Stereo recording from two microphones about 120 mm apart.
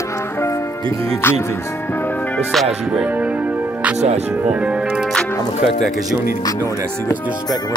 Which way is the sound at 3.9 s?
65° right (ahead or behind).